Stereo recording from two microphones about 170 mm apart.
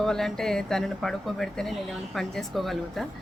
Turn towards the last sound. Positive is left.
turn(degrees=0)  # may be behind; listen again after turning